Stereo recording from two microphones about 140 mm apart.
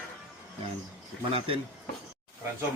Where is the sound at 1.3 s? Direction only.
40° right (ahead or behind).